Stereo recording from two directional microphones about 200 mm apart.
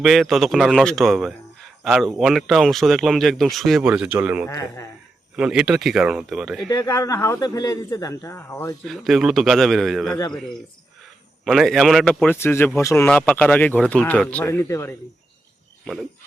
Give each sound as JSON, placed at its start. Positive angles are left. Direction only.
{"t": 0.0, "sound": "speech", "side_deg": 0}
{"t": 4.4, "sound": "a man's voice", "side_deg": 15}
{"t": 5.4, "sound": "speech", "side_deg": -5}
{"t": 6.7, "sound": "a man's voice", "side_deg": 20}
{"t": 8.8, "sound": "a man's voice", "side_deg": 0}